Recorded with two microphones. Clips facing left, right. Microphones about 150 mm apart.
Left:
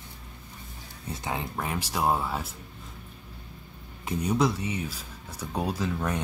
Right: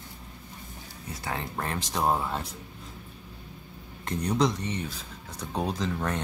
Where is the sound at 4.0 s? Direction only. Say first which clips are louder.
Even; 5° left (ahead or behind).